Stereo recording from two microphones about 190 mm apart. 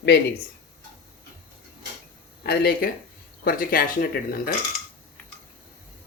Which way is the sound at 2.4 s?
55° left (ahead or behind).